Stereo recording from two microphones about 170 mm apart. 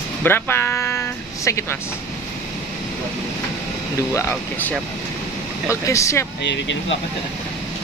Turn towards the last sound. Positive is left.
turn(degrees=15)  # may be behind; listen again after turning